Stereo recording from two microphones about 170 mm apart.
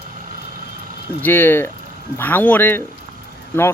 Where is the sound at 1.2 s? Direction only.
10° left (ahead or behind).